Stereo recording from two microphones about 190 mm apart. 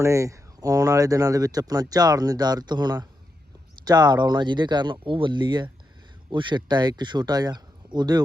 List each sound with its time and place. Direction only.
0.0 s speech: 15° right (ahead or behind)